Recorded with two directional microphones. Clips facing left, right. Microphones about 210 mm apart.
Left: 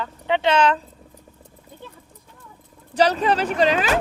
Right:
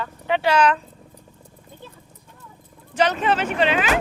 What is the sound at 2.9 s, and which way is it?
Speech, 35° left (ahead or behind).